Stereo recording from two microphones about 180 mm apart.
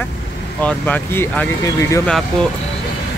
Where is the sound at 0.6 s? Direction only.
10° left (ahead or behind).